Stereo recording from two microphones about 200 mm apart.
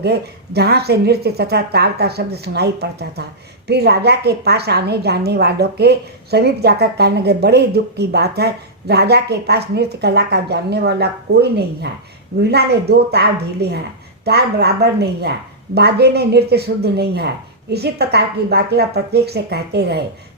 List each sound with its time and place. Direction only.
0.0 s a woman's voice: 55° right (ahead or behind)